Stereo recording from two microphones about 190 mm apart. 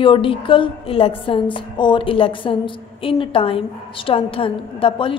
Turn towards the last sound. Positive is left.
turn(degrees=25)  # may be behind; listen again after turning